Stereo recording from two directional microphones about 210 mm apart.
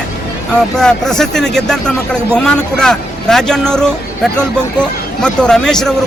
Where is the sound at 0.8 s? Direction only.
5° left (ahead or behind).